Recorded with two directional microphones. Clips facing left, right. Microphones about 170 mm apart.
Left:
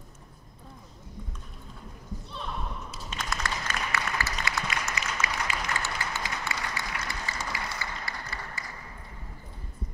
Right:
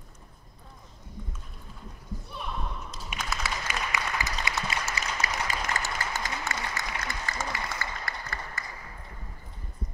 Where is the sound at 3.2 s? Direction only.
10° right (ahead or behind); by 8.6 s 50° right (ahead or behind).